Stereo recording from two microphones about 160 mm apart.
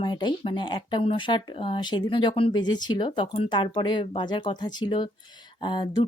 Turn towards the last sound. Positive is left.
turn(degrees=30)  # may be behind; listen again after turning